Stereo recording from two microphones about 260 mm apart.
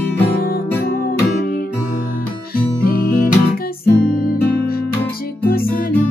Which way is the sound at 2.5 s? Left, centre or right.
Left.